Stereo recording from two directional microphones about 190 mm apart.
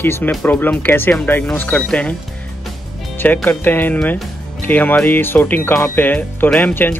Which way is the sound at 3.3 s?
10° left (ahead or behind).